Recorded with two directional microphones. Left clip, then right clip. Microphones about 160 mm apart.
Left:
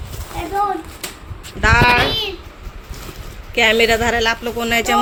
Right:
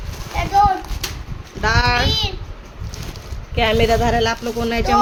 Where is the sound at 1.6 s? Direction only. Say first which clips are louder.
Left 5 dB; 5° left (ahead or behind).